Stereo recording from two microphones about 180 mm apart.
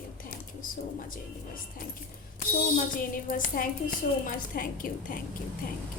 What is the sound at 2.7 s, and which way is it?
A woman's voice, 50° left (ahead or behind).